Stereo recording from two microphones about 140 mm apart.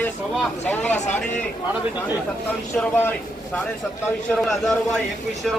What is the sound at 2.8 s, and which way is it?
Speech, 15° left (ahead or behind).